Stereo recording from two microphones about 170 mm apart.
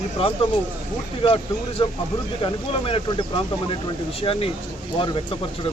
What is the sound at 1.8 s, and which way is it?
Speech, 35° left (ahead or behind).